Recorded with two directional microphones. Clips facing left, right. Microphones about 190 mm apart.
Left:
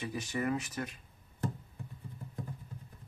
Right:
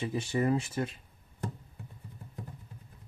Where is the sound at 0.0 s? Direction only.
25° right (ahead or behind).